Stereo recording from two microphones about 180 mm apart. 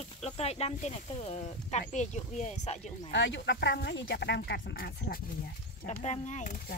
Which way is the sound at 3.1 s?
85° left.